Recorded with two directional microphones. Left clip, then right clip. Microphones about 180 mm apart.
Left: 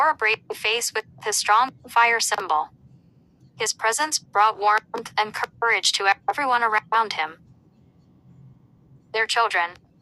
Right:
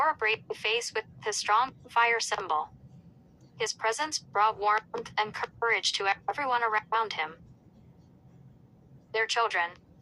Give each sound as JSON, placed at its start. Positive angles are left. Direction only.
{"t": 0.0, "sound": "speech", "side_deg": 25}
{"t": 9.1, "sound": "speech", "side_deg": 25}